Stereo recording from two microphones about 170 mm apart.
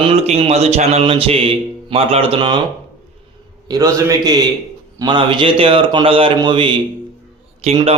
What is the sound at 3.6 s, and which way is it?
A man's voice, 20° right (ahead or behind).